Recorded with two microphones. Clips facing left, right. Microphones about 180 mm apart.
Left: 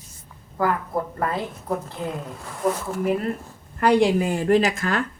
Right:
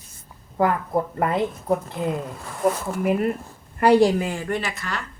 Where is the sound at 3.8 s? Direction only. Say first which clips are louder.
Right 2 dB; 5° right (ahead or behind).